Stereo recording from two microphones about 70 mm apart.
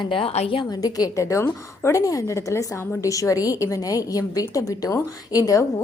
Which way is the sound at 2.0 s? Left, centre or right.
Left.